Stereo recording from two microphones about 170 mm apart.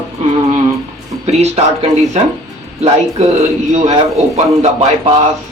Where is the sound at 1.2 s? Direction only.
40° right (ahead or behind).